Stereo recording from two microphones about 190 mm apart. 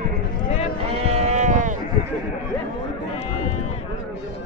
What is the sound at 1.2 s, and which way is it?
Sheep, 35° right (ahead or behind).